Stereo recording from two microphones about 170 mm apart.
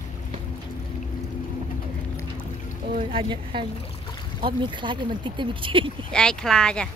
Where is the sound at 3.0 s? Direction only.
30° right (ahead or behind).